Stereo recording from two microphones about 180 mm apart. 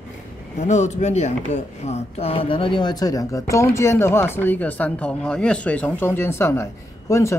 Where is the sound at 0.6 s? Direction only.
40° left (ahead or behind).